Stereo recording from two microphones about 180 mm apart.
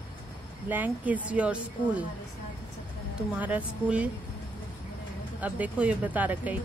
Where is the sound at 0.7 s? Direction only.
10° right (ahead or behind).